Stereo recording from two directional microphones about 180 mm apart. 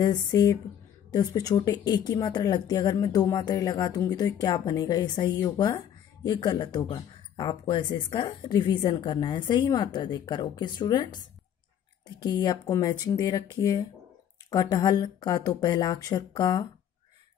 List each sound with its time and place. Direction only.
0.0 s speech: 20° left (ahead or behind)